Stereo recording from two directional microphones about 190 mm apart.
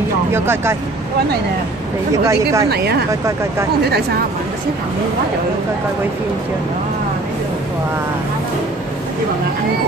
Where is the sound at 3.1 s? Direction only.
15° right (ahead or behind).